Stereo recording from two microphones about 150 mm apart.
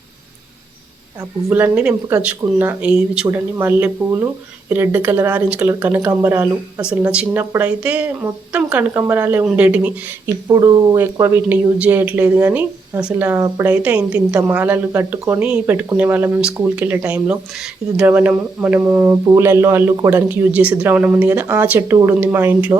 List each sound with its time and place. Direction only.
1.4 s speech: 15° right (ahead or behind)
6.8 s speech: 5° right (ahead or behind)
10.5 s speech: 25° right (ahead or behind)